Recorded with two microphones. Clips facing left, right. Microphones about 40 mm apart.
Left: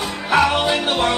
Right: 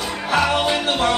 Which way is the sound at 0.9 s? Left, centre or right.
Centre.